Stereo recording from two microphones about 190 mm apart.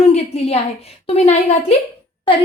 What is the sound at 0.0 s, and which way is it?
A woman's voice, 35° left (ahead or behind).